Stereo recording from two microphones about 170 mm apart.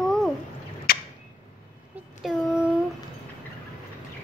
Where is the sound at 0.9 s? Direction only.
60° left (ahead or behind).